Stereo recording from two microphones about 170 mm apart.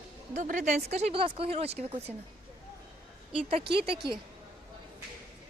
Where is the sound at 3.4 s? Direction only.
35° right (ahead or behind).